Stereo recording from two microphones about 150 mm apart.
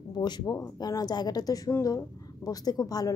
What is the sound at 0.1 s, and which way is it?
A woman's voice, 30° left (ahead or behind).